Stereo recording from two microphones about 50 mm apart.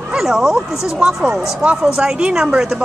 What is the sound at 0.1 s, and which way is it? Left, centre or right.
Speech, centre.